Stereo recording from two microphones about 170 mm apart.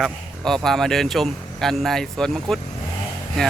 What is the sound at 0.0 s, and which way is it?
Speech, centre (ahead or behind).